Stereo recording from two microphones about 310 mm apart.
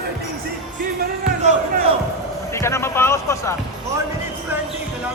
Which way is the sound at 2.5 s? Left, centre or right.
Centre.